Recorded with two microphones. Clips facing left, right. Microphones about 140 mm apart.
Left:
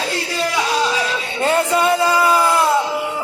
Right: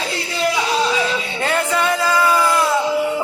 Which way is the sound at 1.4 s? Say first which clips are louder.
Left 4 dB; 25° left (ahead or behind).